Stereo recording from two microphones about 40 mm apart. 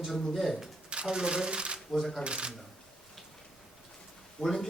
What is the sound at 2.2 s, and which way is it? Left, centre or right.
Speech, right.